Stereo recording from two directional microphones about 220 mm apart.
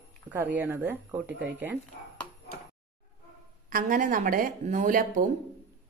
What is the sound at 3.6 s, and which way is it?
A woman's voice, 40° right (ahead or behind).